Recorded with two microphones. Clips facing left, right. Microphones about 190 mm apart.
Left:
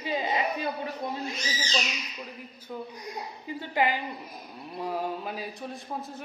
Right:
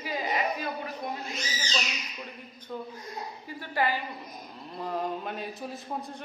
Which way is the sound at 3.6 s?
20° left (ahead or behind).